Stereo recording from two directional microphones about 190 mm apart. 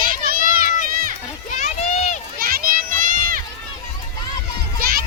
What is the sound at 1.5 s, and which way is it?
Run, 35° left (ahead or behind).